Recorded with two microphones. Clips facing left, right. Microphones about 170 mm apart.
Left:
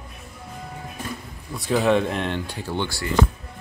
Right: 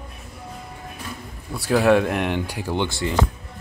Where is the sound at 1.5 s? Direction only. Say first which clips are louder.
Right 3 dB; 5° right (ahead or behind); by 3.1 s 20° right (ahead or behind).